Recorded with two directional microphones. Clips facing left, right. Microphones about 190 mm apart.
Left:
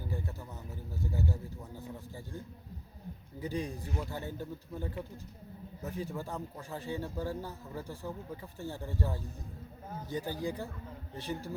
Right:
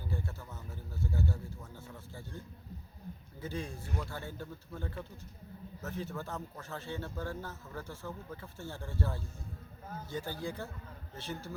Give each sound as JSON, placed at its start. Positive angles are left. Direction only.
{"t": 1.1, "sound": "speech", "side_deg": 15}
{"t": 3.4, "sound": "speech", "side_deg": 15}